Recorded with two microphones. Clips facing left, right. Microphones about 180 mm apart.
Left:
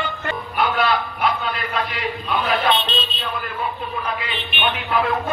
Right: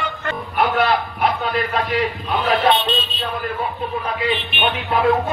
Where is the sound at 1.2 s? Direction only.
45° right (ahead or behind).